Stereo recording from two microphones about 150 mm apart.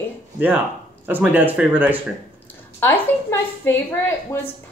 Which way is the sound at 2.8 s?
15° left (ahead or behind).